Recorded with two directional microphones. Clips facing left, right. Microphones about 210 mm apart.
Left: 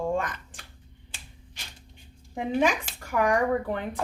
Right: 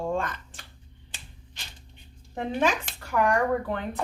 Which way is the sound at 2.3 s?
10° left (ahead or behind).